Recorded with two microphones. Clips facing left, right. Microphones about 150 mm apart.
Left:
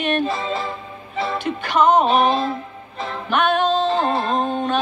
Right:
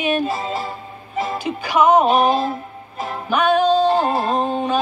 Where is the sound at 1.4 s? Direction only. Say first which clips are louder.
Right 1 dB; 5° right (ahead or behind).